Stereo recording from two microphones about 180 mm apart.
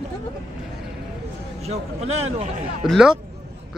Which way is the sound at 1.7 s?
35° right (ahead or behind).